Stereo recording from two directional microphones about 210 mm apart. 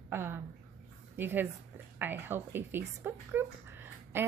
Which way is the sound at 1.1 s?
10° right (ahead or behind).